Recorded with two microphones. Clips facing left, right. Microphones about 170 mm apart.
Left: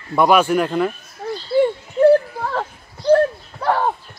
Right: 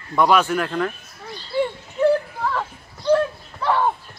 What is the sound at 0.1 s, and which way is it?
Speech, 10° left (ahead or behind).